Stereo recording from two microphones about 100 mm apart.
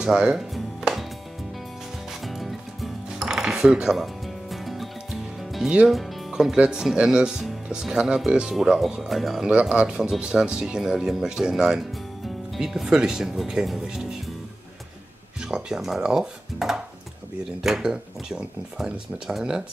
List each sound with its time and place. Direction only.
0.0 s music: 5° right (ahead or behind)
2.2 s speech: centre (ahead or behind)
15.4 s speech: 5° right (ahead or behind)